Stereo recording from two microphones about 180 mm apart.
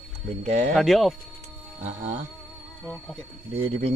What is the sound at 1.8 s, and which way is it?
Speech, 45° right (ahead or behind).